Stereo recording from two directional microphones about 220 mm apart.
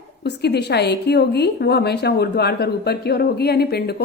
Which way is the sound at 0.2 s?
50° left (ahead or behind).